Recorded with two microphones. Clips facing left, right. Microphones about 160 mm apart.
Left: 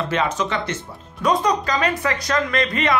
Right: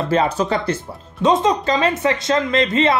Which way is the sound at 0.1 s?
35° right (ahead or behind).